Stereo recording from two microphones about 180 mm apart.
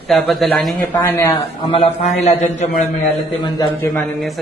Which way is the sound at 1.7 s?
35° left (ahead or behind).